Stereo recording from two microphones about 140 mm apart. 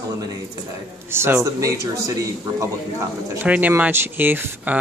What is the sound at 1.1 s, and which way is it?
Speech, 20° right (ahead or behind).